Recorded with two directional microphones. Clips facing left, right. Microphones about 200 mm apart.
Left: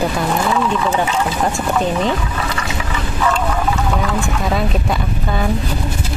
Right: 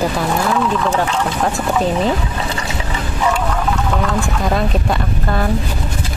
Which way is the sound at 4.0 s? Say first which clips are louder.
Right 1 dB; centre (ahead or behind).